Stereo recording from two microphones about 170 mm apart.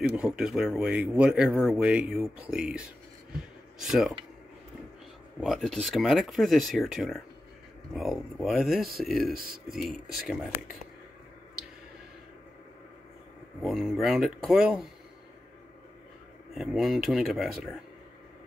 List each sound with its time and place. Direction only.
0.1 s speech: 5° right (ahead or behind)
3.8 s speech: centre (ahead or behind)
5.4 s speech: centre (ahead or behind)
9.3 s speech: 60° right (ahead or behind)
9.8 s speech: centre (ahead or behind)
13.6 s speech: centre (ahead or behind)
16.5 s speech: centre (ahead or behind)